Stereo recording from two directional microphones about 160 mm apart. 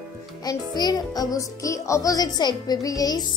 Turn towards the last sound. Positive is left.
turn(degrees=20)  # may be behind; listen again after turning